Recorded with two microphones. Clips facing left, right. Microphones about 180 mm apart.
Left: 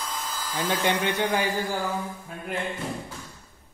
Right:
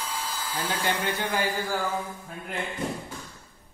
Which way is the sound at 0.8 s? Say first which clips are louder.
Left 4 dB; 20° left (ahead or behind).